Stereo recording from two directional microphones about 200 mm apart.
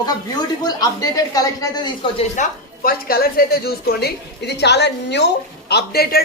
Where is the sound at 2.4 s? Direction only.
45° left (ahead or behind).